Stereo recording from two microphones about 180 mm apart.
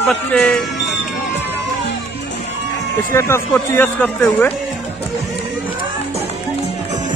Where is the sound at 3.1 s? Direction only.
15° left (ahead or behind).